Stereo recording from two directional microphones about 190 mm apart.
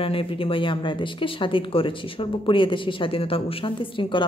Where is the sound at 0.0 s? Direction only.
30° left (ahead or behind).